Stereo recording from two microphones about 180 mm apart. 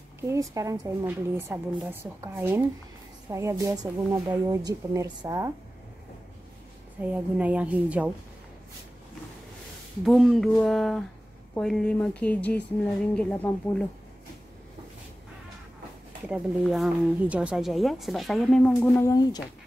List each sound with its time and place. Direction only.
0.3 s a woman's voice: 20° right (ahead or behind)
7.1 s a woman's voice: 10° right (ahead or behind)
10.0 s speech: centre (ahead or behind)
16.3 s speech: centre (ahead or behind)